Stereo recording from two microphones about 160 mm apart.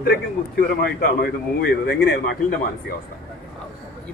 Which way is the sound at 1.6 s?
80° left.